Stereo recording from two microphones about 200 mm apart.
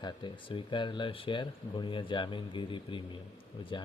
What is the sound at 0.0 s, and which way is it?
A man's voice, 25° left (ahead or behind).